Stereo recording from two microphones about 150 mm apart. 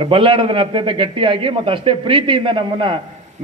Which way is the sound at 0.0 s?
35° right (ahead or behind).